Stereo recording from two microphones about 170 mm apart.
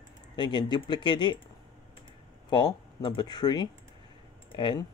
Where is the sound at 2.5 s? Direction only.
25° left (ahead or behind).